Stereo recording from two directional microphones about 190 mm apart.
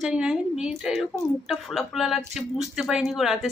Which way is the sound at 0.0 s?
5° right (ahead or behind).